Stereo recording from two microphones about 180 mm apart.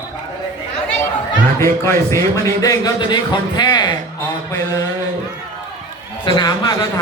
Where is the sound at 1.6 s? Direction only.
15° left (ahead or behind).